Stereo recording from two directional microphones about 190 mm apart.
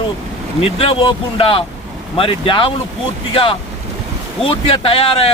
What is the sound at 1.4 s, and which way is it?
Speech, 25° left (ahead or behind).